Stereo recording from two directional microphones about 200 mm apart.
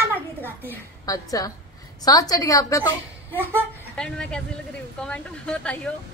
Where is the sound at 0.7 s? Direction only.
20° left (ahead or behind).